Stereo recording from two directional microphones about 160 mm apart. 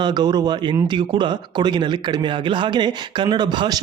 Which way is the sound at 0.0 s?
25° right (ahead or behind).